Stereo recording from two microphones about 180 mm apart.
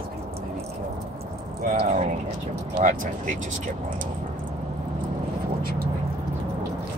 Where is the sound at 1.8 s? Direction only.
40° right (ahead or behind).